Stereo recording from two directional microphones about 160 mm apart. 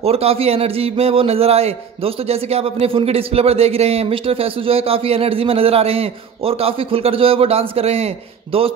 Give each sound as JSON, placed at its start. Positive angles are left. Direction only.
{"t": 0.0, "sound": "speech", "side_deg": -40}